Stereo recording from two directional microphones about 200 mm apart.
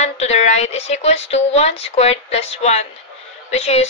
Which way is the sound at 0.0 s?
35° left (ahead or behind).